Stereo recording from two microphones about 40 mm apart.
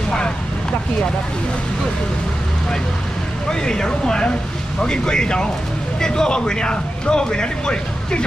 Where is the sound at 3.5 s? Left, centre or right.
Centre.